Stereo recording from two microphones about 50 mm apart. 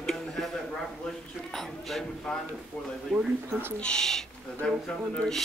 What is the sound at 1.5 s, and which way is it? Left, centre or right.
A man's voice, centre.